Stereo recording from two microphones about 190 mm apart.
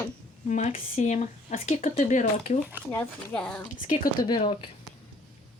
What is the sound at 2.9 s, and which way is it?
Speech, 10° left (ahead or behind).